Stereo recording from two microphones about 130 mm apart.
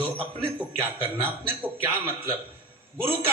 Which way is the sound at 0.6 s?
15° right (ahead or behind).